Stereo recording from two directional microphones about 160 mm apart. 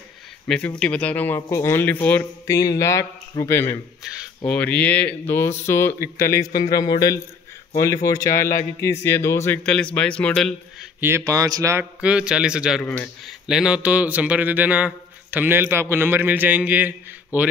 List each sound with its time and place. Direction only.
0.5 s speech: 5° left (ahead or behind)
4.0 s speech: 5° right (ahead or behind)
4.5 s speech: 10° left (ahead or behind)
9.6 s a man's voice: 5° left (ahead or behind)
11.0 s speech: 15° right (ahead or behind)
11.8 s a man's voice: 5° right (ahead or behind)
12.8 s speech: 10° left (ahead or behind)
13.2 s speech: 5° right (ahead or behind)